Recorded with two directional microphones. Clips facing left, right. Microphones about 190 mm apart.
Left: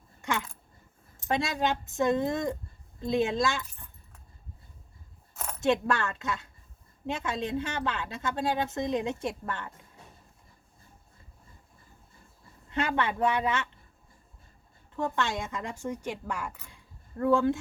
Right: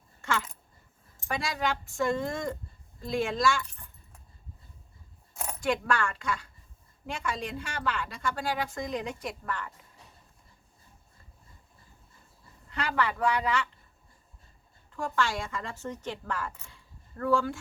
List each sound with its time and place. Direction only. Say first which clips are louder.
0.2 s dog: even; 15° left (ahead or behind)
1.2 s a woman's voice: left 3 dB; 25° left (ahead or behind)
5.3 s a sound: right 1 dB; 15° right (ahead or behind)
5.5 s a woman's voice: left 2 dB; 25° left (ahead or behind)
12.7 s a woman's voice: left 2 dB; 20° left (ahead or behind)
14.9 s a woman's voice: even; 20° left (ahead or behind)